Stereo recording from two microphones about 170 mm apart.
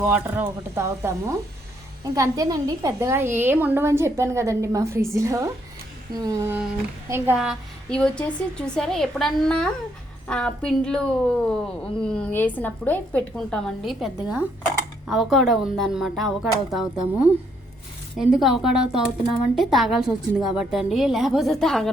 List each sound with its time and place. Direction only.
0.1 s a woman's voice: 15° right (ahead or behind)
6.1 s a sound: 20° right (ahead or behind)
7.3 s a woman's voice: centre (ahead or behind)